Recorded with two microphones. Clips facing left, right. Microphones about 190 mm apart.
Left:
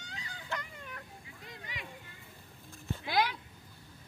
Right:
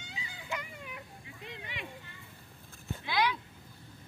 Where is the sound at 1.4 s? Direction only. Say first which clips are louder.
Right 3 dB; 25° right (ahead or behind).